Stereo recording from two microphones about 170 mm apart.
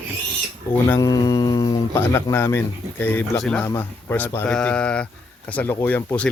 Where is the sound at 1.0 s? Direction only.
20° left (ahead or behind).